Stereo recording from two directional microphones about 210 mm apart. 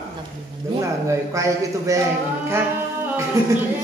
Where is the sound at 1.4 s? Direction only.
15° right (ahead or behind).